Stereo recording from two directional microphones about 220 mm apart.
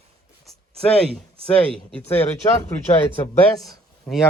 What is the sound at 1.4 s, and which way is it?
Speech, 5° left (ahead or behind).